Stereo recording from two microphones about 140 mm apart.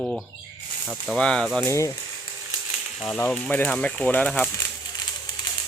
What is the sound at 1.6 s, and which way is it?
Speech, 20° left (ahead or behind).